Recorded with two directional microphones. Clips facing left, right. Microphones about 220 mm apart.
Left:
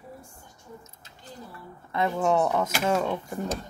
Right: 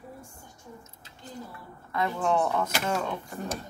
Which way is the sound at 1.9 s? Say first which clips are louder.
Left 3 dB; 25° left (ahead or behind).